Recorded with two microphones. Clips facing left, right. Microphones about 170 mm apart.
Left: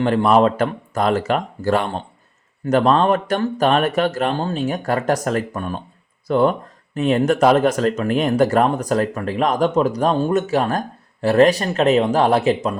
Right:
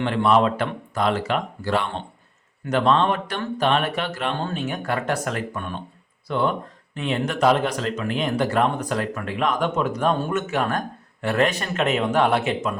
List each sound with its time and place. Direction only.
0.0 s speech: 45° left (ahead or behind)